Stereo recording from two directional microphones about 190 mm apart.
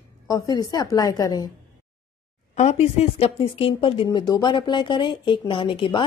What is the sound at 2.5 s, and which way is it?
Speech, 35° left (ahead or behind).